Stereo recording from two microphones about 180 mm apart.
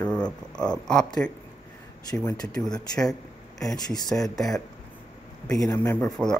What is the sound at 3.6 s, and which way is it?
Speech, centre (ahead or behind).